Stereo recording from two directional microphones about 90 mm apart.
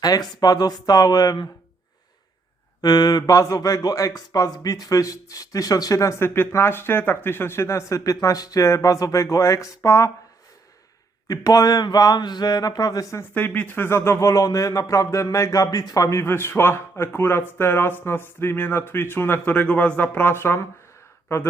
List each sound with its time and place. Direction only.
0.0 s speech: 45° left (ahead or behind)
2.8 s speech: 45° left (ahead or behind)
11.3 s speech: 40° left (ahead or behind)
13.3 s speech: 20° left (ahead or behind)